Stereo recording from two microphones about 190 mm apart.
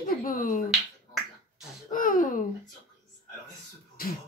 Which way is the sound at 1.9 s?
45° left (ahead or behind).